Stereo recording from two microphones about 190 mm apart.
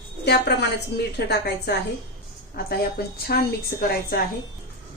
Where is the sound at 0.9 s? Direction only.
60° left (ahead or behind).